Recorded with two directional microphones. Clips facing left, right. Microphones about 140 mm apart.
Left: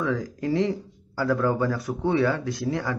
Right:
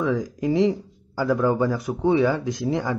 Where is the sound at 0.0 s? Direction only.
15° right (ahead or behind).